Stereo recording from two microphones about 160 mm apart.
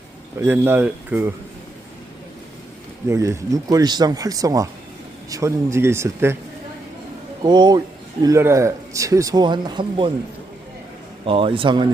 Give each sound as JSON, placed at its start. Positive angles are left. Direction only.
{"t": 0.4, "sound": "speech", "side_deg": -15}
{"t": 3.1, "sound": "speech", "side_deg": -20}
{"t": 7.4, "sound": "speech", "side_deg": -25}
{"t": 11.3, "sound": "a man's voice", "side_deg": -35}